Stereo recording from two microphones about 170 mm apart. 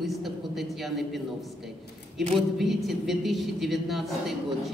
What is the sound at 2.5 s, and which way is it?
A woman's voice, centre (ahead or behind).